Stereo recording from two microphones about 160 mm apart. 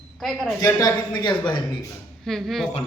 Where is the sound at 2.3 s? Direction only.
Centre (ahead or behind).